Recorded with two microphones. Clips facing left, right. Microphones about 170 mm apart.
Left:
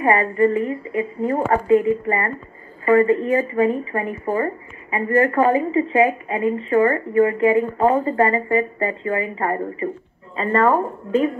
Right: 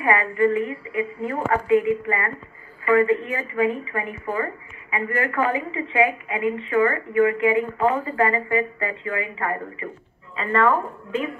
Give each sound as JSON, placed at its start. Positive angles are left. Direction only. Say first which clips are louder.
{"t": 0.0, "sound": "a woman's voice", "louder": "left 3 dB", "side_deg": 35}